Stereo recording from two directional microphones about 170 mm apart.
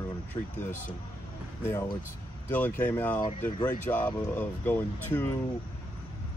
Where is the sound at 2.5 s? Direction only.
10° left (ahead or behind).